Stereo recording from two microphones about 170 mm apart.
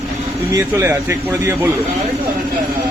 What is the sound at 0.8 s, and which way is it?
Speech, 15° right (ahead or behind).